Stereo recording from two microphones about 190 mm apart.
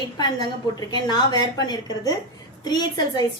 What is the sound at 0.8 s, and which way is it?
A woman's voice, 20° left (ahead or behind).